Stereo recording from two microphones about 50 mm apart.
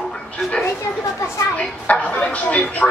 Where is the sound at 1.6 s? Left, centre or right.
Left.